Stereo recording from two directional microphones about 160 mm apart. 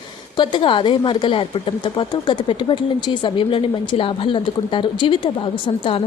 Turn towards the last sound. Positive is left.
turn(degrees=35)  # may be behind; listen again after turning